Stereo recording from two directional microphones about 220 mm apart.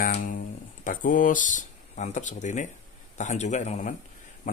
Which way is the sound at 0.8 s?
35° left (ahead or behind).